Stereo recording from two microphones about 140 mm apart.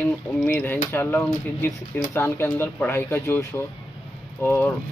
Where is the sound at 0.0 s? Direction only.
10° left (ahead or behind).